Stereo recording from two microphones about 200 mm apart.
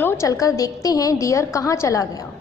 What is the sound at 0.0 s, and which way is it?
A woman's voice, 15° left (ahead or behind).